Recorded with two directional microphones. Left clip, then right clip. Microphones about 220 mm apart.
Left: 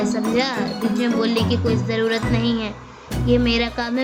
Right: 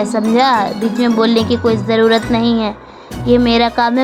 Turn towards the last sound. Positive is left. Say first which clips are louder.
# right 9 dB
turn(degrees=-20)  # may be behind; listen again after turning